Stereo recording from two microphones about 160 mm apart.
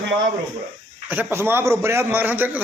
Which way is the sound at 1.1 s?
10° right (ahead or behind).